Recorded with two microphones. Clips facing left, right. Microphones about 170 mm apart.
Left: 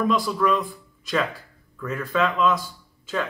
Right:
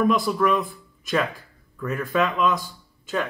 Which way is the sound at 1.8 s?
20° right (ahead or behind).